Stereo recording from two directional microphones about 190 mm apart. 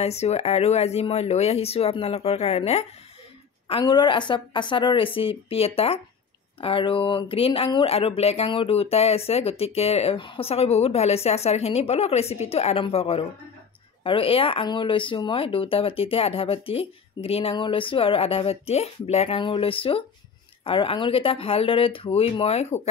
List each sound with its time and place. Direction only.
0.0 s speech: 35° left (ahead or behind)